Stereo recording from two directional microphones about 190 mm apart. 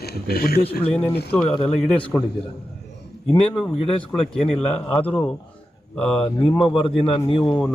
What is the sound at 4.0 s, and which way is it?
Speech, 10° left (ahead or behind).